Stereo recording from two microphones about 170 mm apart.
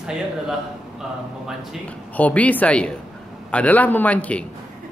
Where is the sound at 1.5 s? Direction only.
10° left (ahead or behind).